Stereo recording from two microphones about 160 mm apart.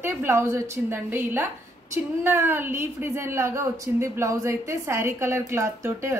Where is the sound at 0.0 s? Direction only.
15° right (ahead or behind).